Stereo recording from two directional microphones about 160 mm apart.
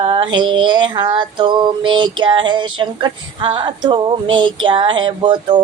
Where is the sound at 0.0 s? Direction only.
35° right (ahead or behind).